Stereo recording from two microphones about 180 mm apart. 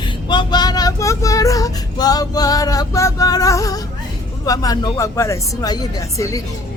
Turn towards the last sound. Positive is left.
turn(degrees=20)  # may be behind; listen again after turning